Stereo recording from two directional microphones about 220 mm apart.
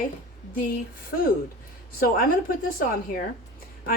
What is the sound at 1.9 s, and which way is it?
Speech, 40° left (ahead or behind).